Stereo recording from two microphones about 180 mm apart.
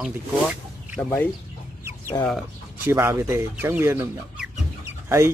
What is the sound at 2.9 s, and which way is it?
Speech, 15° right (ahead or behind).